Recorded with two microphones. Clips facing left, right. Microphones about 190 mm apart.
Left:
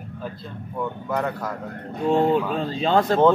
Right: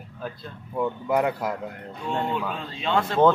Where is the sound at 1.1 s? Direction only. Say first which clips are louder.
Right 3 dB; 15° right (ahead or behind).